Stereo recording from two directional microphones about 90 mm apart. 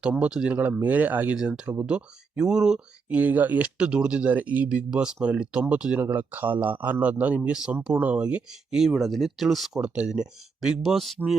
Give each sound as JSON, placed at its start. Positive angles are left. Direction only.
{"t": 0.0, "sound": "speech", "side_deg": -10}
{"t": 8.9, "sound": "speech", "side_deg": 0}